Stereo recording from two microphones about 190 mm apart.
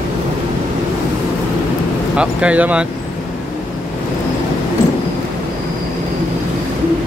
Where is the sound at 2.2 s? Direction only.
5° right (ahead or behind).